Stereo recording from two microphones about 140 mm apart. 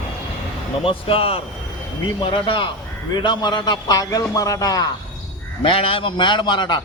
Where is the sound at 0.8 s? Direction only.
40° left (ahead or behind).